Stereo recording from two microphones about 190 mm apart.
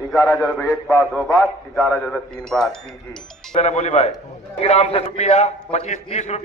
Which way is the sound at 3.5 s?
35° left (ahead or behind).